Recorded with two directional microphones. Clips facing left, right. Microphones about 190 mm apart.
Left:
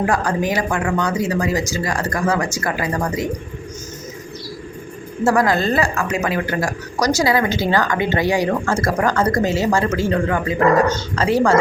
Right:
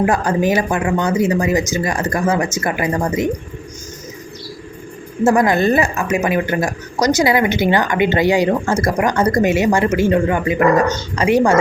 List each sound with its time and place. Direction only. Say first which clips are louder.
0.0 s speech: right 3 dB; 25° right (ahead or behind)
5.2 s speech: right 3 dB; 20° right (ahead or behind)